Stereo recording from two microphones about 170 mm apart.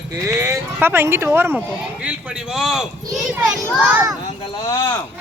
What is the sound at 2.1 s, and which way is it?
Speech, 5° right (ahead or behind).